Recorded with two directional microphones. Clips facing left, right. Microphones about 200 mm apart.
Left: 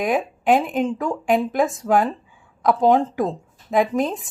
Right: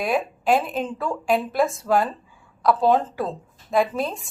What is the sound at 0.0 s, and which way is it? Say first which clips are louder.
A woman's voice: left 2 dB; 15° left (ahead or behind).